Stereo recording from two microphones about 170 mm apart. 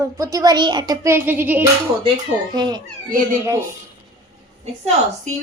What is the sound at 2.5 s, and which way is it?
Speech, 25° right (ahead or behind).